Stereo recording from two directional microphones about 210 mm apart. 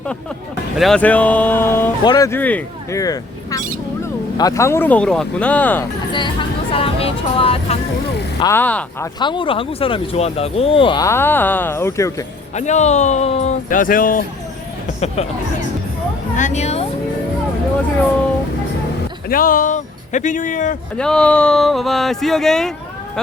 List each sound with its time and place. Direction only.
0.8 s speech: 5° left (ahead or behind)
6.7 s speech: 25° left (ahead or behind)
8.4 s speech: 10° left (ahead or behind)
9.1 s speech: 20° left (ahead or behind)
12.5 s speech: 35° left (ahead or behind)
16.3 s speech: 35° left (ahead or behind)
19.3 s speech: 40° left (ahead or behind)
20.9 s speech: 5° left (ahead or behind)